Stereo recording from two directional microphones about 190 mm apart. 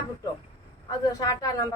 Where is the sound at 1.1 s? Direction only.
20° left (ahead or behind).